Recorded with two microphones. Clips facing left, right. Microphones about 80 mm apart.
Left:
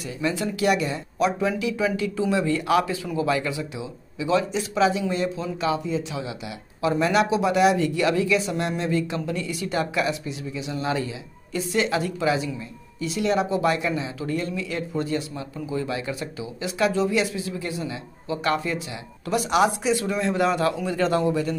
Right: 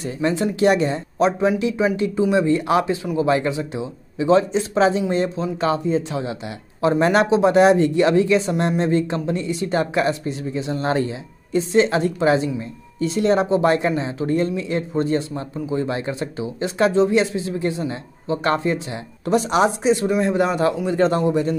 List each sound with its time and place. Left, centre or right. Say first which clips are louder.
0.0 s a man's voice: right 5 dB; right
11.5 s a man's voice: right 6 dB; right